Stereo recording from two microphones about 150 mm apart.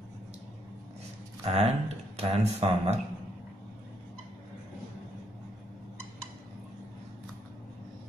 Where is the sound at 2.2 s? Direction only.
40° right (ahead or behind).